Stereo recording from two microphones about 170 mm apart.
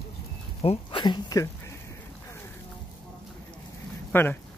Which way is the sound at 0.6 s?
25° left (ahead or behind).